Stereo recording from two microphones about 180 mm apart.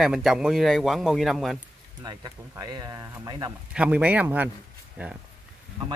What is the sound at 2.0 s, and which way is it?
A man's voice, 20° right (ahead or behind).